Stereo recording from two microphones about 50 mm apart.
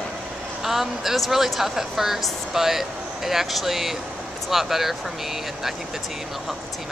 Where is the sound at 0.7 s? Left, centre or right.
Centre.